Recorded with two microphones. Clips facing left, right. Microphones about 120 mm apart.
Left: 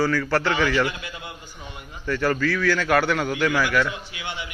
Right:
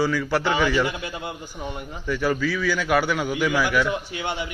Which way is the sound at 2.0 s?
10° right (ahead or behind).